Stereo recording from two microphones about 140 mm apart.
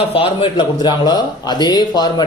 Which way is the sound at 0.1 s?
40° left (ahead or behind).